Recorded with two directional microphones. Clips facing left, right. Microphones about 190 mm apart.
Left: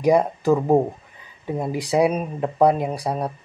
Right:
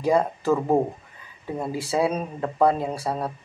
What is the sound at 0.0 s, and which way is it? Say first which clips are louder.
Speech: left 4 dB; 15° left (ahead or behind).